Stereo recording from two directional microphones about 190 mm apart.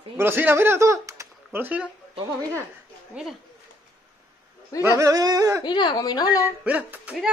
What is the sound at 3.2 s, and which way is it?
Speech, 5° right (ahead or behind).